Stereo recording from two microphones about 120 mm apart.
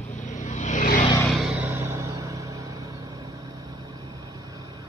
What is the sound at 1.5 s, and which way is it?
Music, 15° right (ahead or behind).